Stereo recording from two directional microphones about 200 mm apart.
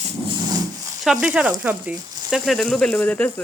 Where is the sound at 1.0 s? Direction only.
Centre (ahead or behind).